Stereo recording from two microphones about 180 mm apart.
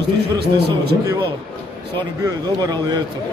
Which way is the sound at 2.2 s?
20° right (ahead or behind).